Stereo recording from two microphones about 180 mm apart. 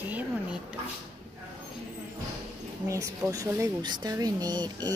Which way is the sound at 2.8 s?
15° right (ahead or behind).